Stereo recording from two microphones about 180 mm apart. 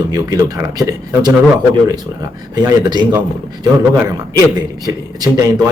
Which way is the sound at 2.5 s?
20° right (ahead or behind).